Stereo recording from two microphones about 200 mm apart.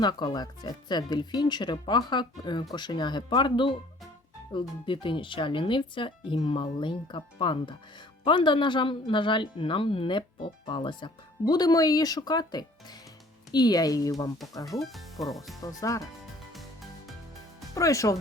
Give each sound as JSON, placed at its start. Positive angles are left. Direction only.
{"t": 0.0, "sound": "speech", "side_deg": 20}
{"t": 4.9, "sound": "speech", "side_deg": 25}
{"t": 14.8, "sound": "speech", "side_deg": 0}
{"t": 15.6, "sound": "speech", "side_deg": 15}
{"t": 16.6, "sound": "music", "side_deg": 0}
{"t": 17.7, "sound": "speech", "side_deg": 15}